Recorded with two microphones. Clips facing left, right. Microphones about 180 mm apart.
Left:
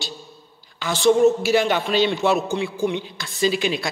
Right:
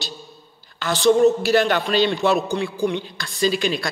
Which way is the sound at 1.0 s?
15° left (ahead or behind).